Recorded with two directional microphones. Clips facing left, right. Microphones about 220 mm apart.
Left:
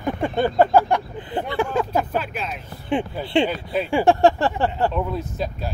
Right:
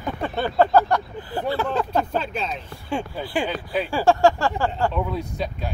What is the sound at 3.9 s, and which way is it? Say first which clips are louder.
Speech: left 2 dB; 20° left (ahead or behind).